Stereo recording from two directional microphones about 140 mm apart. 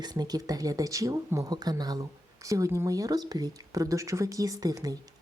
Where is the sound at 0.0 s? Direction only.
30° right (ahead or behind).